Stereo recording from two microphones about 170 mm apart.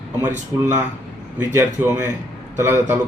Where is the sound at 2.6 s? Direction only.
15° right (ahead or behind).